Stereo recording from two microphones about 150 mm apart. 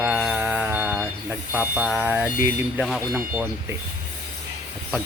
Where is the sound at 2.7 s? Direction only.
Centre (ahead or behind).